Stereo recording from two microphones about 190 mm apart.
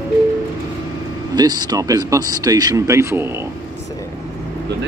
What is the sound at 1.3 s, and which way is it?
A man's voice, 20° right (ahead or behind).